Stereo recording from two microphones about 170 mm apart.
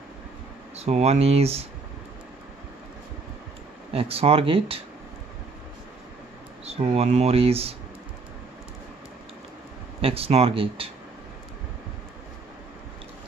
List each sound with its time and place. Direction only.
0.7 s speech: 40° right (ahead or behind)
3.9 s speech: 35° right (ahead or behind)
6.6 s speech: 35° right (ahead or behind)
10.0 s speech: 35° right (ahead or behind)